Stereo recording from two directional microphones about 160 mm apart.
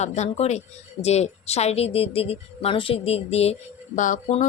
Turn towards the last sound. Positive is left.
turn(degrees=50)  # may be behind; listen again after turning